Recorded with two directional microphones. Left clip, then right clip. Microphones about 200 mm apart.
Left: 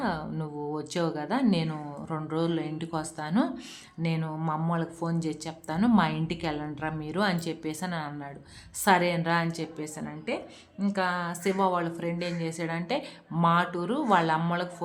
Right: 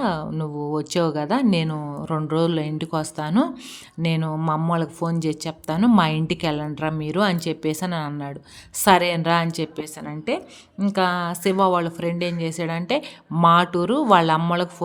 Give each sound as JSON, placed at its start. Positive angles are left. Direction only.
{"t": 0.0, "sound": "a woman's voice", "side_deg": -35}